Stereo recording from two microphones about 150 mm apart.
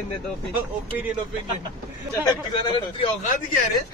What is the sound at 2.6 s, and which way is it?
Speech, 35° left (ahead or behind).